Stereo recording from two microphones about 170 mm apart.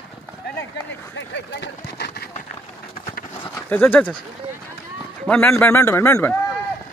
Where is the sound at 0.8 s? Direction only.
90° left.